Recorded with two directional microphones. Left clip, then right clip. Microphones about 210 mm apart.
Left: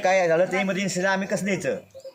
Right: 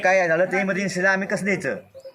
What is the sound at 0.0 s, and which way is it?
A man's voice, centre (ahead or behind).